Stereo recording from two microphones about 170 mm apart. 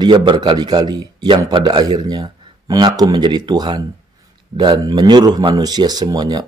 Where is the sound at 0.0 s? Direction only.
25° right (ahead or behind).